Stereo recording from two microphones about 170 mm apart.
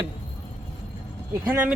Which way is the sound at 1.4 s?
10° right (ahead or behind).